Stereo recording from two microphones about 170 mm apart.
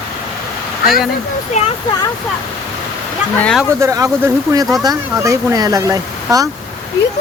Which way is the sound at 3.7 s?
20° right (ahead or behind).